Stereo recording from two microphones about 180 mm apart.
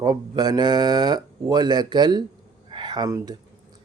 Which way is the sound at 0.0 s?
20° right (ahead or behind).